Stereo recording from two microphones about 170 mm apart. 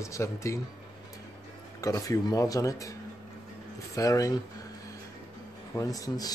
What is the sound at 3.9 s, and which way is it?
Speech, 20° left (ahead or behind).